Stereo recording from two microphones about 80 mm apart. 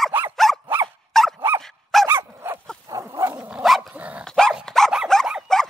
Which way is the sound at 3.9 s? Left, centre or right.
Centre.